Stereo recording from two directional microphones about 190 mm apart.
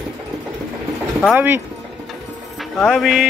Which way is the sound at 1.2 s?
10° right (ahead or behind).